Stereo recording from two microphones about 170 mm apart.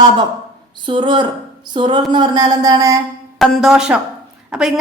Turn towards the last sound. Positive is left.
turn(degrees=-5)  # may be behind; listen again after turning